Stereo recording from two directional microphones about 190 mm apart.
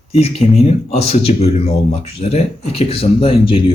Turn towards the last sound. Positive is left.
turn(degrees=30)  # may be behind; listen again after turning